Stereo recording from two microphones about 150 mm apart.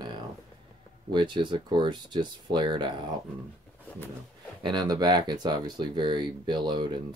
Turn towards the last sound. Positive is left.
turn(degrees=-30)  # may be behind; listen again after turning